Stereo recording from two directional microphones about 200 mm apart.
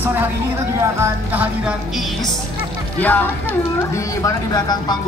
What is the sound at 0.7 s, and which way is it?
Speech, 10° right (ahead or behind).